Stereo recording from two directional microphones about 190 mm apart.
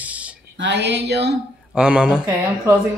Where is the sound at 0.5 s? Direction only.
65° right (ahead or behind).